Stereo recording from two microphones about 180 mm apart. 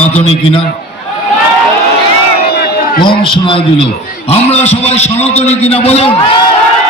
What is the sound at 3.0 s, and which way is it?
A man's voice, 25° left (ahead or behind).